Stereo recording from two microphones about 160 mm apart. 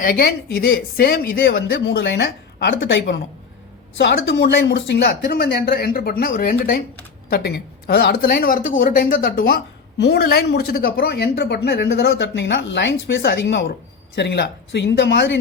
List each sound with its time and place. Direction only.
0.0 s a woman's voice: 70° left (ahead or behind)
7.3 s a woman's voice: 80° left; by 9.6 s 65° left (ahead or behind)
10.0 s a woman's voice: 85° left